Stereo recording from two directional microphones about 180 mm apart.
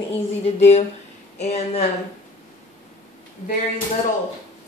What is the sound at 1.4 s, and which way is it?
Speech, 35° left (ahead or behind).